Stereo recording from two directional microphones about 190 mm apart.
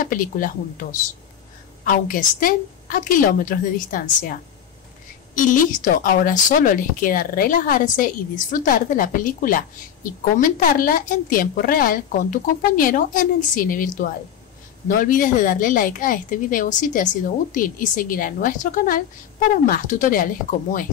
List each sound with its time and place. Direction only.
0.0 s a woman's voice: 45° left (ahead or behind)
1.9 s a woman's voice: 45° left (ahead or behind)